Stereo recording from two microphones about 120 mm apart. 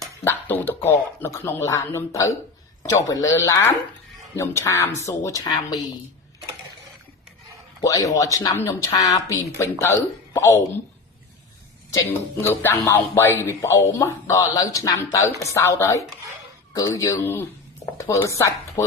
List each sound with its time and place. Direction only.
0.3 s speech: 15° left (ahead or behind); by 5.8 s 30° left (ahead or behind)
7.8 s speech: 30° left (ahead or behind)
12.0 s speech: 15° left (ahead or behind)
17.8 s chopping: 25° left (ahead or behind)
18.3 s speech: 20° left (ahead or behind)